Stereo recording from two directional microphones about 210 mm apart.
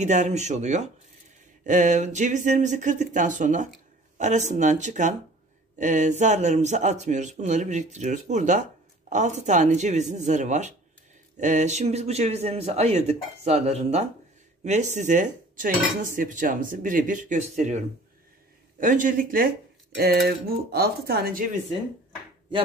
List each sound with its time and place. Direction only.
0.0 s speech: 35° right (ahead or behind)